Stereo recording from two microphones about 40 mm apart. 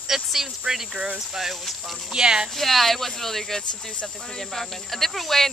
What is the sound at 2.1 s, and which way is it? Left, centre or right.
Speech, right.